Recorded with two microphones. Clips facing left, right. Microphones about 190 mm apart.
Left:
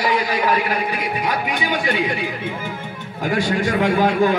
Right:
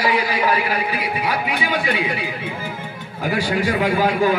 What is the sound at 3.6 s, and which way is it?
Speech, 10° right (ahead or behind).